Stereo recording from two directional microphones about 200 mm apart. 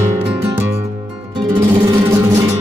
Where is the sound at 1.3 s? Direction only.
15° right (ahead or behind).